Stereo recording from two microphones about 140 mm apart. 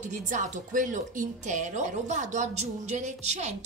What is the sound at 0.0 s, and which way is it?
A woman's voice, 60° right (ahead or behind).